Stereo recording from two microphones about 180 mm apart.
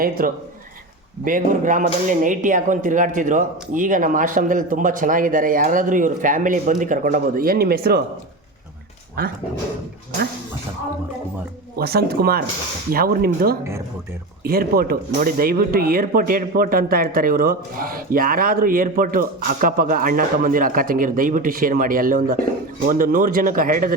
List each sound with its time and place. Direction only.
0.2 s speech: 55° right (ahead or behind)
11.8 s speech: 60° right (ahead or behind)